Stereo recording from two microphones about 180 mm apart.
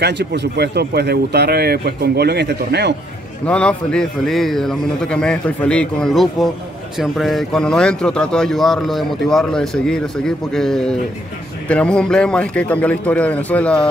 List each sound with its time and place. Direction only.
0.0 s speech: 70° right (ahead or behind)
3.4 s a man's voice: 5° left (ahead or behind)